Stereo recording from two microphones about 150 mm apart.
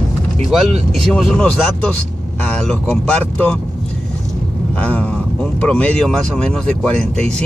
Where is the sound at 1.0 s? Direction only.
5° left (ahead or behind).